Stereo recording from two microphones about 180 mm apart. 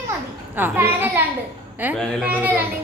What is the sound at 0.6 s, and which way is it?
Speech, 10° right (ahead or behind).